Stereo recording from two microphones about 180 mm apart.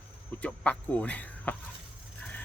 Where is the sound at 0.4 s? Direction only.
5° left (ahead or behind).